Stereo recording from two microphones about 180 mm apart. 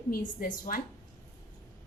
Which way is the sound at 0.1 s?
50° left (ahead or behind).